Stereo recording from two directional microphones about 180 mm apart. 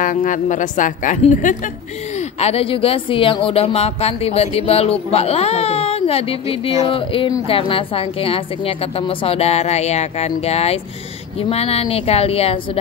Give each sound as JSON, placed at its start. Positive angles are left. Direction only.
{"t": 0.0, "sound": "a woman's voice", "side_deg": 45}